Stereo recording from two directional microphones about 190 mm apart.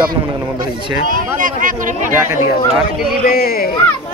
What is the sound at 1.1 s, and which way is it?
Speech, 45° right (ahead or behind).